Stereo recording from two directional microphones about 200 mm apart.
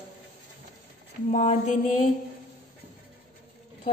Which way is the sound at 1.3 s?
35° left (ahead or behind).